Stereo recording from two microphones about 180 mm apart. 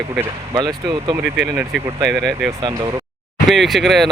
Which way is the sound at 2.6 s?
25° right (ahead or behind).